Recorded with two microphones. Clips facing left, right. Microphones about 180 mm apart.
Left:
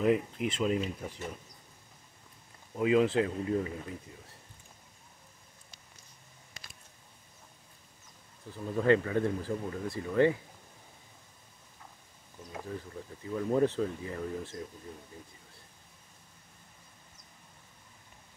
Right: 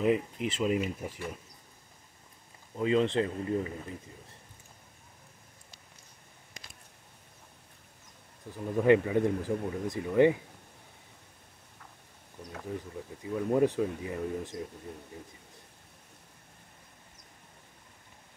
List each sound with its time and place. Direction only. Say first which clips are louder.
0.0 s speech: even; centre (ahead or behind)
2.7 s speech: left 1 dB; 5° left (ahead or behind)
8.5 s speech: right 3 dB; 15° right (ahead or behind)
13.3 s speech: right 1 dB; 10° right (ahead or behind)